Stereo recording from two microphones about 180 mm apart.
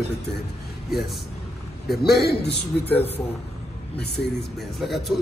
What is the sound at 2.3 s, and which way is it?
Speech, 65° left (ahead or behind).